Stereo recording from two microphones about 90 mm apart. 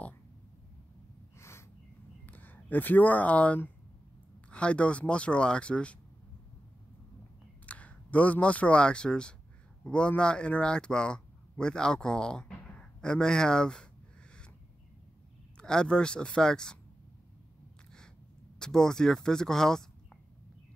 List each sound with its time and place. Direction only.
2.2 s a man's voice: 20° left (ahead or behind)
7.6 s a man's voice: 15° left (ahead or behind)
15.5 s a man's voice: 10° left (ahead or behind)
18.6 s speech: 5° left (ahead or behind)